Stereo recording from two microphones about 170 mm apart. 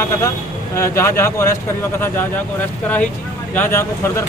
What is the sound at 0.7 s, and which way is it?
Speech, 15° left (ahead or behind).